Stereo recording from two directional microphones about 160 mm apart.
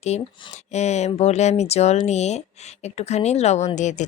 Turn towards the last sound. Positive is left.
turn(degrees=50)  # may be behind; listen again after turning